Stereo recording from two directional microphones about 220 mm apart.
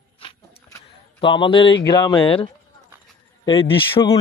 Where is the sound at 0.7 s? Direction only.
20° left (ahead or behind).